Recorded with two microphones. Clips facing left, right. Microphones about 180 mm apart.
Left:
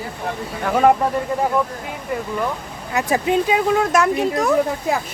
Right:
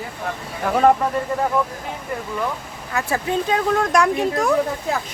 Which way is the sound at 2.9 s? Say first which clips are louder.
Left 4 dB; 15° left (ahead or behind).